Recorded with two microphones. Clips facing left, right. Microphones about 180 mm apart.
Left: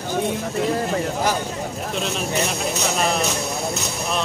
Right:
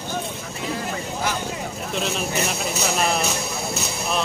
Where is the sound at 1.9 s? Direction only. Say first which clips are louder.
Even; centre (ahead or behind).